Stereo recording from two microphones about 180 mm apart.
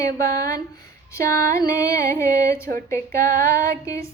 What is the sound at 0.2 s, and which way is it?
Speech, 55° right (ahead or behind).